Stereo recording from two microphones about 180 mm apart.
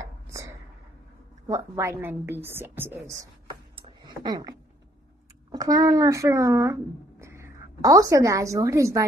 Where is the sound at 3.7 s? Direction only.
25° right (ahead or behind).